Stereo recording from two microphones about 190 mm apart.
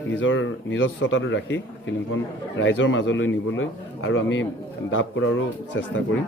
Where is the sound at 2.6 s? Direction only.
80° left.